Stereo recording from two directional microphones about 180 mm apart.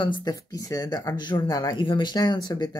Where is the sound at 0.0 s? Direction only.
25° left (ahead or behind).